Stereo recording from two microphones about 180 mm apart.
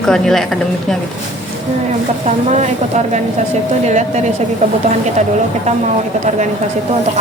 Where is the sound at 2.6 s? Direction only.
40° right (ahead or behind).